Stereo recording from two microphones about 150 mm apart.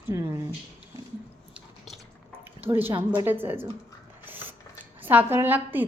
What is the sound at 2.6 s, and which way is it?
A woman's voice, 15° right (ahead or behind).